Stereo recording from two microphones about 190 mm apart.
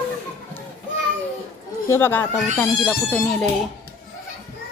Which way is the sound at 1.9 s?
10° left (ahead or behind).